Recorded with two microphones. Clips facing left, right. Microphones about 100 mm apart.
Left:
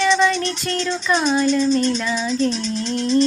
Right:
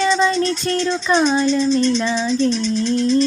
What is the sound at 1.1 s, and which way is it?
Speech, 25° right (ahead or behind).